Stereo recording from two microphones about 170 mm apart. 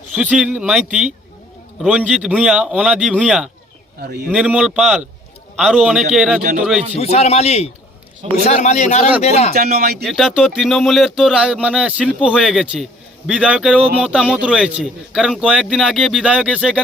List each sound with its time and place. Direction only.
0.2 s a man's voice: 5° right (ahead or behind)
4.0 s speech: 65° right (ahead or behind)
4.3 s speech: 5° right (ahead or behind)
7.0 s a man's voice: 35° left (ahead or behind)
9.5 s speech: 60° right (ahead or behind)
10.0 s speech: centre (ahead or behind)